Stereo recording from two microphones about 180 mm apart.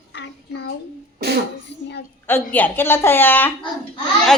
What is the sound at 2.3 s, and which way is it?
A woman's voice, 10° left (ahead or behind).